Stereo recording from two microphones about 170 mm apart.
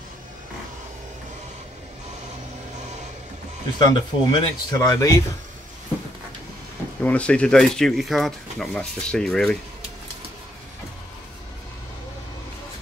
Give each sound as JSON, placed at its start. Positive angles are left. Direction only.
{"t": 3.7, "sound": "speech", "side_deg": 25}
{"t": 7.0, "sound": "speech", "side_deg": 10}